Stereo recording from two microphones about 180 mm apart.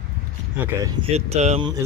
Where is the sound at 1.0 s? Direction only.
35° right (ahead or behind).